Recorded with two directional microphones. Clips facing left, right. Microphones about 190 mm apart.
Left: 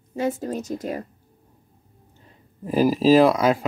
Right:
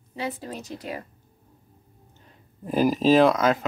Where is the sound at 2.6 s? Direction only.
5° left (ahead or behind).